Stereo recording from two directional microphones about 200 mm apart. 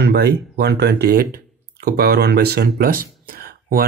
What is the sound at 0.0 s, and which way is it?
Speech, 55° right (ahead or behind).